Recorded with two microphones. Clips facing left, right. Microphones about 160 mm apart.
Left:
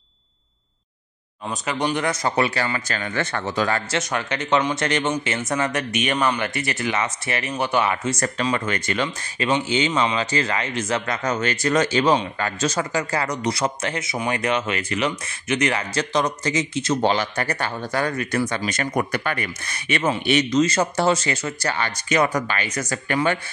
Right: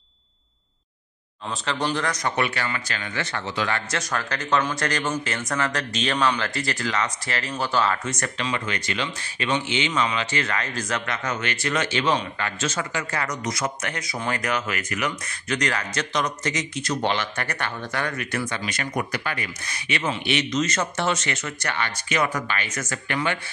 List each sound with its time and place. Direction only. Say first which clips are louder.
1.5 s speech: left 2 dB; 20° left (ahead or behind); by 4.0 s 40° left (ahead or behind)
4.0 s speech: left 3 dB; 20° left (ahead or behind)
8.1 s speech: left 5 dB; 40° left (ahead or behind)
9.7 s speech: left 4 dB; 35° left (ahead or behind)
17.0 s speech: left 3 dB; 35° left (ahead or behind)